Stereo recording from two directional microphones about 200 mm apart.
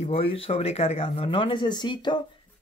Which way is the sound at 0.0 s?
30° left (ahead or behind).